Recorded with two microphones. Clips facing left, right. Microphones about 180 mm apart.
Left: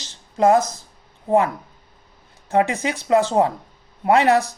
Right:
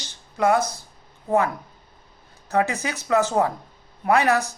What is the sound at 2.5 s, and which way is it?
Speech, 30° left (ahead or behind).